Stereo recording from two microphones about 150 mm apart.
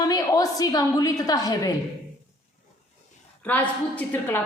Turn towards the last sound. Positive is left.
turn(degrees=10)  # may be behind; listen again after turning